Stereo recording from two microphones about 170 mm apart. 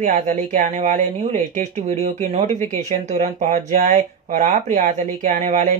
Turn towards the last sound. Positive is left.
turn(degrees=-45)  # may be behind; listen again after turning